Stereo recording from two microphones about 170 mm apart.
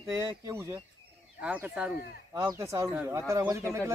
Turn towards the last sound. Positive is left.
turn(degrees=-15)  # may be behind; listen again after turning